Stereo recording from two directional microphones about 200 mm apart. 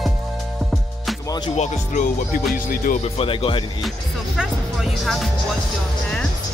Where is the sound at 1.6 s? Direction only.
35° left (ahead or behind).